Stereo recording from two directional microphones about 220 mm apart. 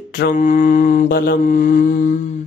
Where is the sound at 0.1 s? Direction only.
40° left (ahead or behind).